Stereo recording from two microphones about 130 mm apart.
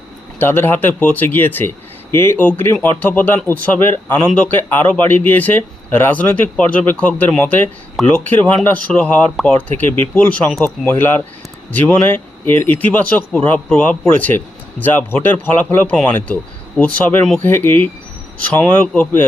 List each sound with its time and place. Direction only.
0.3 s speech: 15° left (ahead or behind)